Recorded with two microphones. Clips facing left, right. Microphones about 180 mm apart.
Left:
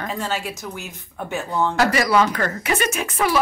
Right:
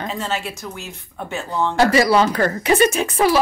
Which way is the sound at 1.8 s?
30° right (ahead or behind).